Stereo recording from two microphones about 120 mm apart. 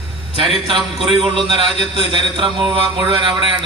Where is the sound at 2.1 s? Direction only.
45° right (ahead or behind).